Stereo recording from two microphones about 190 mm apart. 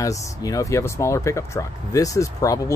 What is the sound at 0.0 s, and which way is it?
Speech, 20° left (ahead or behind).